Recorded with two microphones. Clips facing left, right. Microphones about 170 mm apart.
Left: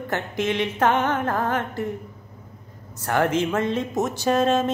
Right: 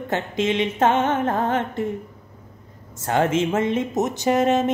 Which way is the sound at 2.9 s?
20° right (ahead or behind).